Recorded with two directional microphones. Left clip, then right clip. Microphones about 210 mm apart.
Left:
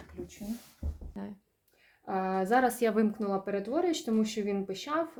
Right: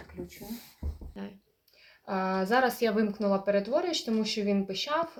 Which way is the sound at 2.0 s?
40° left (ahead or behind).